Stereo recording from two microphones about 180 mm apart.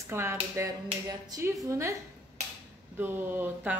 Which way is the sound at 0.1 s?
15° right (ahead or behind).